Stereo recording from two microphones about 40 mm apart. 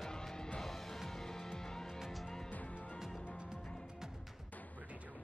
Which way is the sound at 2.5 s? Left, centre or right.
Left.